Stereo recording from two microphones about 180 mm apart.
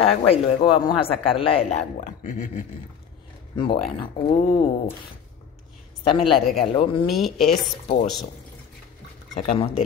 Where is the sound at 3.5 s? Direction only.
25° left (ahead or behind).